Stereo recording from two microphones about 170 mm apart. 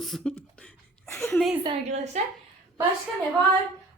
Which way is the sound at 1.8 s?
40° right (ahead or behind).